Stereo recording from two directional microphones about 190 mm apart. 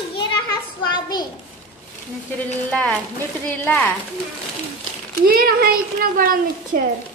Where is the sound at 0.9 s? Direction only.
20° left (ahead or behind).